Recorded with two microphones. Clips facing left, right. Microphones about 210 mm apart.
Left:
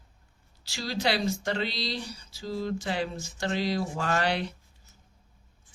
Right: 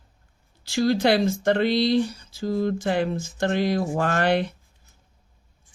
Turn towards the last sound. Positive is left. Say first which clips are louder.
# right 6 dB
turn(degrees=-55)  # may be behind; listen again after turning